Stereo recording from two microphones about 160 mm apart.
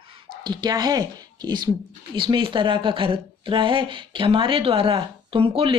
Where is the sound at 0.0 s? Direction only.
30° right (ahead or behind).